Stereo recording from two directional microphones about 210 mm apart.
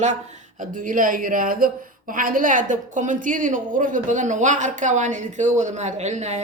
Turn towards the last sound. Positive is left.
turn(degrees=-35)  # may be behind; listen again after turning